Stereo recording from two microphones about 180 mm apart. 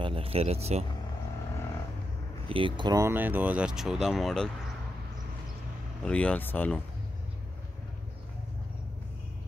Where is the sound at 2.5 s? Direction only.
25° right (ahead or behind); by 4.4 s centre (ahead or behind).